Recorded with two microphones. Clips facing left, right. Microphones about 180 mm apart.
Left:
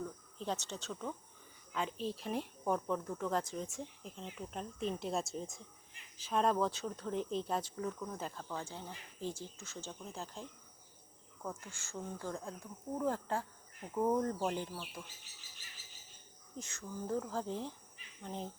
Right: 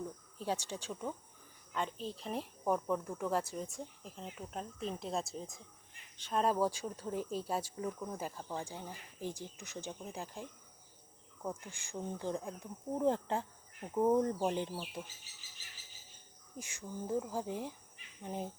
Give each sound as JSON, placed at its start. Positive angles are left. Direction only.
{"t": 0.3, "sound": "speech", "side_deg": -10}
{"t": 1.7, "sound": "speech", "side_deg": 0}
{"t": 11.4, "sound": "speech", "side_deg": -15}
{"t": 16.6, "sound": "speech", "side_deg": -10}